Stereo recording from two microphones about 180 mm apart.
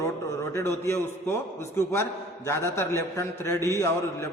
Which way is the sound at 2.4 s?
15° left (ahead or behind).